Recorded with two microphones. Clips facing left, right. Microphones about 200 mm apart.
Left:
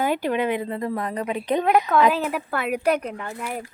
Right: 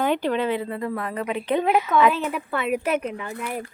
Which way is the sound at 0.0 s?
10° left (ahead or behind).